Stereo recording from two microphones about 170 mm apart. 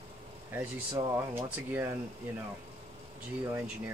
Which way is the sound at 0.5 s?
15° right (ahead or behind).